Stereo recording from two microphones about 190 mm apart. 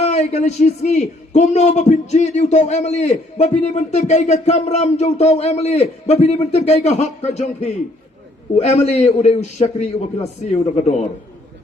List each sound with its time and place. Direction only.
0.0 s a man's voice: 35° left (ahead or behind)